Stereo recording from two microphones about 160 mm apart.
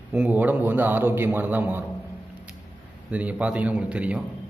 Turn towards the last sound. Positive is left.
turn(degrees=-5)  # may be behind; listen again after turning